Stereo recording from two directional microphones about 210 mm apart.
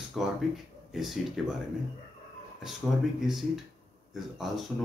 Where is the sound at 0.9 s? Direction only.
Centre (ahead or behind).